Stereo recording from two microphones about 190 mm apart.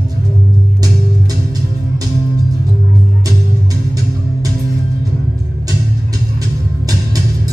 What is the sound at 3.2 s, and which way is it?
Music, 20° right (ahead or behind).